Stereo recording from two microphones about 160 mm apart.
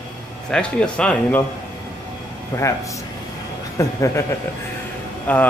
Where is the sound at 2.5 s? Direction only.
20° left (ahead or behind).